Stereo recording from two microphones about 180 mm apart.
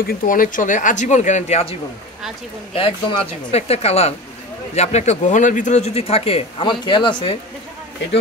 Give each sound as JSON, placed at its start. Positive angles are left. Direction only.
{"t": 0.0, "sound": "a man's voice", "side_deg": 50}